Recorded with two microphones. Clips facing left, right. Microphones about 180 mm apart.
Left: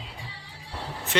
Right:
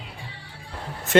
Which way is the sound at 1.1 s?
45° right (ahead or behind).